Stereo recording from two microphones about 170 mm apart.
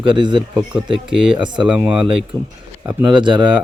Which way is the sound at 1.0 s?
5° right (ahead or behind).